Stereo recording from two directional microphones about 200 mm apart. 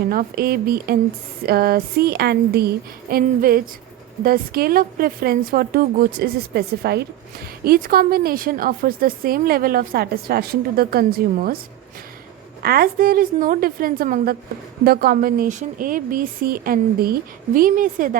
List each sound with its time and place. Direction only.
0.1 s a woman's voice: 45° right (ahead or behind)
12.6 s a woman's voice: 50° right (ahead or behind)